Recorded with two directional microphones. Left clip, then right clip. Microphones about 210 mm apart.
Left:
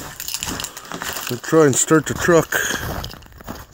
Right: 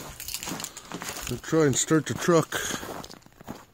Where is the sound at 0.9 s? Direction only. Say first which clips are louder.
Left 9 dB; 45° left (ahead or behind).